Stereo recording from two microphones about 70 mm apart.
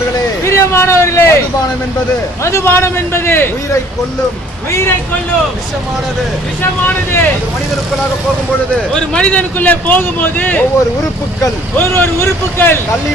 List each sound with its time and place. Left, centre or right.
0.4 s a sound: left
2.4 s a man's voice: left
6.6 s speech: left
9.0 s speech: centre
11.8 s a man's voice: left